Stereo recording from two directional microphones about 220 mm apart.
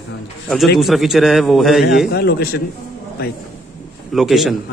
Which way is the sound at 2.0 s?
45° left (ahead or behind).